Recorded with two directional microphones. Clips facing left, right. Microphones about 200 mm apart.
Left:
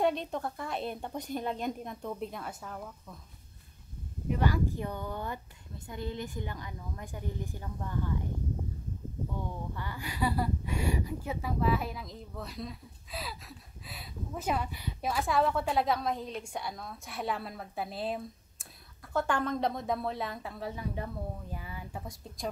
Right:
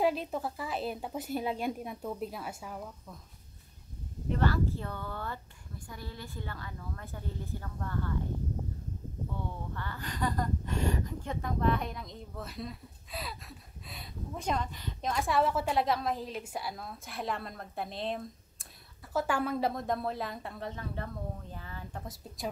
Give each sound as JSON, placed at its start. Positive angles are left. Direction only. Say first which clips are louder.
{"t": 0.0, "sound": "speech", "louder": "even", "side_deg": -5}
{"t": 4.3, "sound": "a woman's voice", "louder": "even", "side_deg": 15}
{"t": 9.4, "sound": "speech", "louder": "left 1 dB", "side_deg": 10}
{"t": 19.1, "sound": "speech", "louder": "even", "side_deg": -5}
{"t": 20.7, "sound": "a woman's voice", "louder": "left 2 dB", "side_deg": 10}